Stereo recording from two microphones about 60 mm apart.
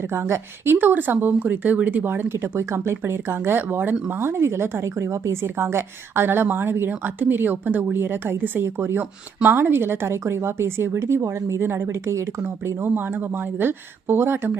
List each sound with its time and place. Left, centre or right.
0.1 s a woman's voice: right
12.4 s a woman's voice: right